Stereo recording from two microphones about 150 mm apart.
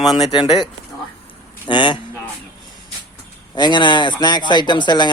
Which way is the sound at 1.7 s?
30° left (ahead or behind).